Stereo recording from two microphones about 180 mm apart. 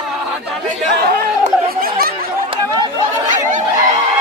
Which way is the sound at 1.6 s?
55° right (ahead or behind).